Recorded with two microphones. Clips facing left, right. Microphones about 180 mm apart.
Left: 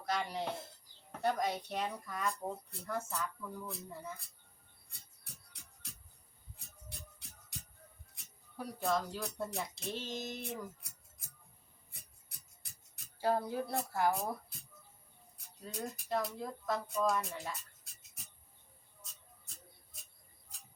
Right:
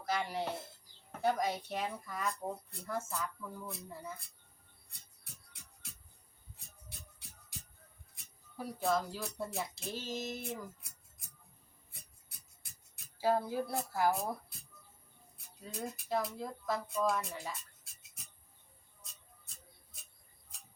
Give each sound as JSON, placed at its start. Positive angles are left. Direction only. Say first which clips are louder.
{"t": 0.0, "sound": "speech", "louder": "right 1 dB", "side_deg": -5}
{"t": 4.9, "sound": "music", "louder": "left 1 dB", "side_deg": 0}
{"t": 7.5, "sound": "music", "louder": "left 1 dB", "side_deg": 0}
{"t": 8.1, "sound": "speech", "louder": "right 1 dB", "side_deg": 0}
{"t": 12.6, "sound": "speech", "louder": "even", "side_deg": 0}
{"t": 15.6, "sound": "speech", "louder": "even", "side_deg": 0}